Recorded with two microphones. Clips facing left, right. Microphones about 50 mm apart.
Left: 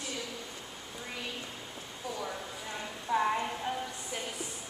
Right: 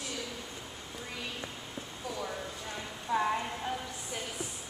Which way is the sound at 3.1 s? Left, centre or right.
Centre.